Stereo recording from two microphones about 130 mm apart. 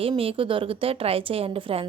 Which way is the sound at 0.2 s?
45° right (ahead or behind).